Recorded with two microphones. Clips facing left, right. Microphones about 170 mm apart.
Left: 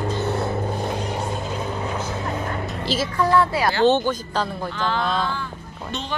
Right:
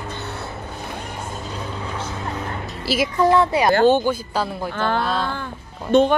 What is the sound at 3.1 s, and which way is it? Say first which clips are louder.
Speech: right 3 dB; 20° right (ahead or behind).